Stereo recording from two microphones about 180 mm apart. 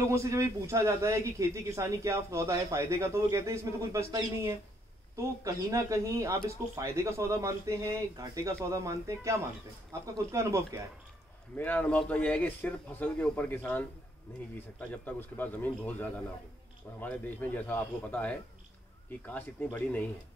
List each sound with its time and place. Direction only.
0.1 s a man's voice: 15° right (ahead or behind)
11.5 s speech: 10° left (ahead or behind)